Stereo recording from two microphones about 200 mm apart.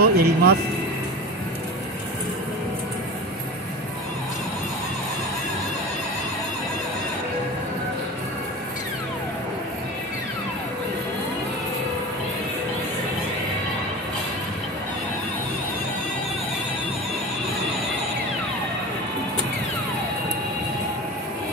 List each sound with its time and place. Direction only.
0.0 s speech: 50° right (ahead or behind)